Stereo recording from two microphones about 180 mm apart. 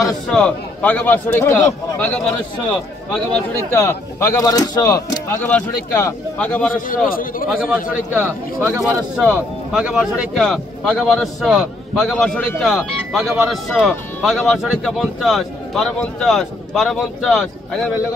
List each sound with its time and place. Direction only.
0.0 s speech: 5° left (ahead or behind)
4.4 s speech: 20° left (ahead or behind)
7.1 s a man's voice: 50° left (ahead or behind)
7.4 s speech: 5° right (ahead or behind)